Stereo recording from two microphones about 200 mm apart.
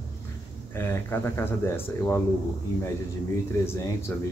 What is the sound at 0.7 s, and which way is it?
Speech, 10° left (ahead or behind).